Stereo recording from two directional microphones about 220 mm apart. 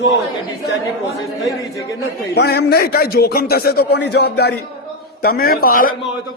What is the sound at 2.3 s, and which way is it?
A man's voice, 45° left (ahead or behind).